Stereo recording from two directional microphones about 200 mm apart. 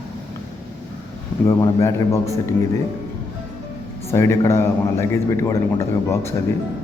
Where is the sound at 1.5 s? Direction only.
15° left (ahead or behind).